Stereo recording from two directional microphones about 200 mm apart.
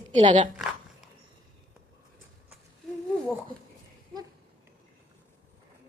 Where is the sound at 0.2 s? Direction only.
40° right (ahead or behind).